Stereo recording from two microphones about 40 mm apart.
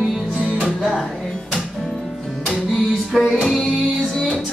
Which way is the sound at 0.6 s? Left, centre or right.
Right.